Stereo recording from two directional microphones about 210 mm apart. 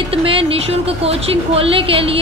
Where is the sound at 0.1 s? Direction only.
25° right (ahead or behind).